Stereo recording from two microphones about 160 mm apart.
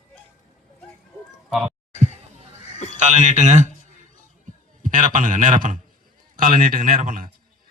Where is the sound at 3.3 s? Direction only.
45° right (ahead or behind).